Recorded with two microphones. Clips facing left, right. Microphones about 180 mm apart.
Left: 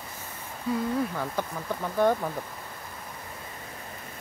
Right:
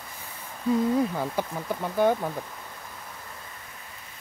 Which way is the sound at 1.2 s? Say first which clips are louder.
Right 2 dB; 15° right (ahead or behind).